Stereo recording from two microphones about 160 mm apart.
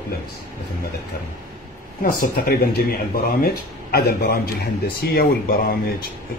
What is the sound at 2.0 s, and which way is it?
Speech, 65° left (ahead or behind).